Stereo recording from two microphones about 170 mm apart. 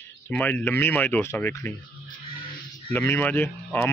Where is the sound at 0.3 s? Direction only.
10° left (ahead or behind).